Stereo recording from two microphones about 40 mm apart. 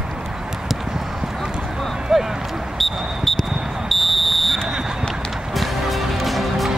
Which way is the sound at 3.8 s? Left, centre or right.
Centre.